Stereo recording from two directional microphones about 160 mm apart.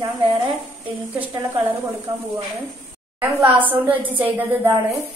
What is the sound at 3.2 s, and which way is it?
Speech, 10° right (ahead or behind).